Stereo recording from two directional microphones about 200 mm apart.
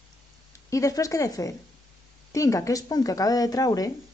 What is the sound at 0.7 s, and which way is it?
Speech, 15° left (ahead or behind).